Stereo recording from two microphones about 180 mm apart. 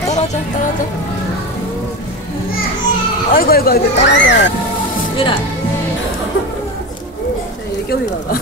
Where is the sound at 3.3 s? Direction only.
55° left (ahead or behind); by 4.4 s 75° left (ahead or behind).